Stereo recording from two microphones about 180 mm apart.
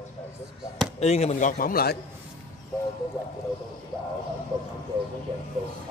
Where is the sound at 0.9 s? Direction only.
35° left (ahead or behind); by 1.9 s 55° left (ahead or behind).